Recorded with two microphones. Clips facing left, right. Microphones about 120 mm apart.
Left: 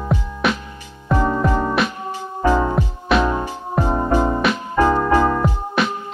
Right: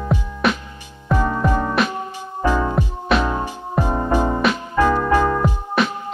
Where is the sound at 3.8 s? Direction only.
15° left (ahead or behind).